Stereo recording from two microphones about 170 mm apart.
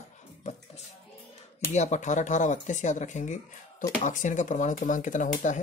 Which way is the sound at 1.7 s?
45° left (ahead or behind).